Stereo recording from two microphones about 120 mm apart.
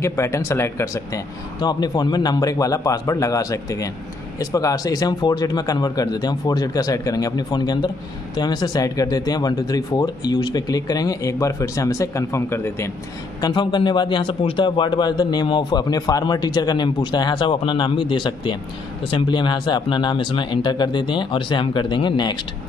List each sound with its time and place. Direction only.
0.0 s a man's voice: 25° left (ahead or behind)
1.6 s a man's voice: 35° left (ahead or behind)
13.4 s a man's voice: 40° left (ahead or behind)